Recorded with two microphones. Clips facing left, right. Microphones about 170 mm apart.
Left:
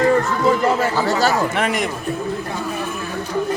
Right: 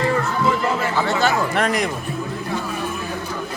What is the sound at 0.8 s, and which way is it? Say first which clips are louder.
Chatter: left 2 dB; 40° left (ahead or behind).